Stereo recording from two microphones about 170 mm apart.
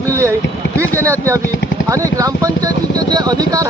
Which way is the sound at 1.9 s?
20° right (ahead or behind).